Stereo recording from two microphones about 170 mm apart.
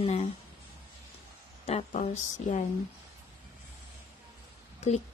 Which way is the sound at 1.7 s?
40° left (ahead or behind).